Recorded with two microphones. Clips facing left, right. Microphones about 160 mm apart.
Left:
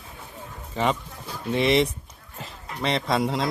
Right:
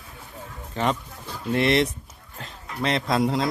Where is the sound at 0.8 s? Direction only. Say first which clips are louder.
Even; centre (ahead or behind).